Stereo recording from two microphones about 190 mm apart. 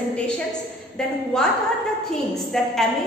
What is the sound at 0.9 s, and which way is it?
A woman's voice, 5° left (ahead or behind).